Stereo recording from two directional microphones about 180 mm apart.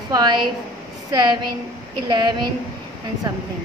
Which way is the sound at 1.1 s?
25° right (ahead or behind).